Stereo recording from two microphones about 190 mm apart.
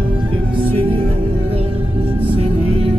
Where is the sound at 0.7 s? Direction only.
30° right (ahead or behind).